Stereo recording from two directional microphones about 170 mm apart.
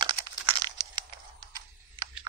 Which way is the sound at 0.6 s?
25° right (ahead or behind).